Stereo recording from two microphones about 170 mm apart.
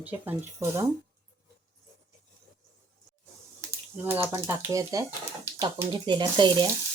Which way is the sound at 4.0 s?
10° right (ahead or behind).